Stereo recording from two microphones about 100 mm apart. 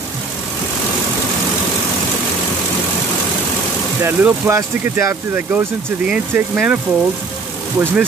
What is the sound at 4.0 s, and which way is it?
Speech, 25° right (ahead or behind).